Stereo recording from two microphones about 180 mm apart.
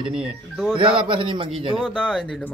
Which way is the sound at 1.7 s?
5° left (ahead or behind).